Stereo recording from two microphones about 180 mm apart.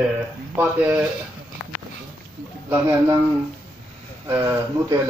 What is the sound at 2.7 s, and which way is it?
Speech, 15° right (ahead or behind).